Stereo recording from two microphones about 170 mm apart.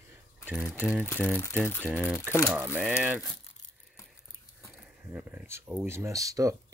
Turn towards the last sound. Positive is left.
turn(degrees=-20)  # may be behind; listen again after turning